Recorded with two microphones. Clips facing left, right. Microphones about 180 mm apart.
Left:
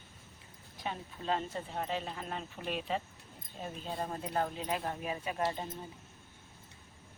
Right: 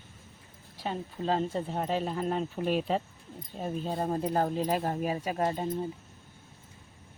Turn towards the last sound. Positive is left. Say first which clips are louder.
# right 5 dB
turn(degrees=-40)  # may be behind; listen again after turning